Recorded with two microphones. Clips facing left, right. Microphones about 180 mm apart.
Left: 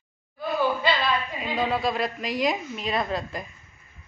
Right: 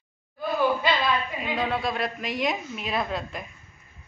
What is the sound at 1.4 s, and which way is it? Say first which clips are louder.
Speech: left 2 dB; centre (ahead or behind).